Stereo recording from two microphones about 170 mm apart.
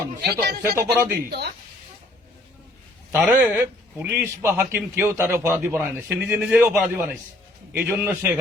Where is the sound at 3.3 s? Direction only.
10° right (ahead or behind).